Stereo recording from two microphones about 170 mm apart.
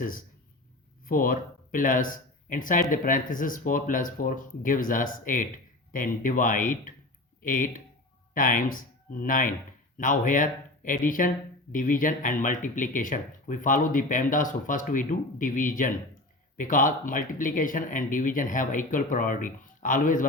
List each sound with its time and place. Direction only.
0.0 s speech: 55° left (ahead or behind)